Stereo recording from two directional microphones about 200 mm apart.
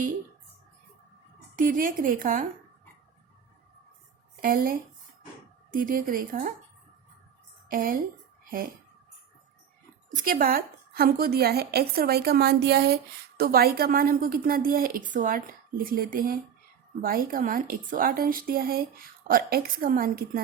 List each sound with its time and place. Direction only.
1.5 s a woman's voice: 45° right (ahead or behind)
4.4 s a woman's voice: 45° right (ahead or behind)
7.7 s a woman's voice: 45° right (ahead or behind)
10.2 s a woman's voice: 45° right (ahead or behind)